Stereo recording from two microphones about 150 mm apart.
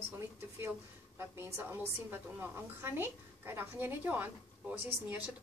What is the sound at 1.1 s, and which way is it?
A woman's voice, 15° right (ahead or behind).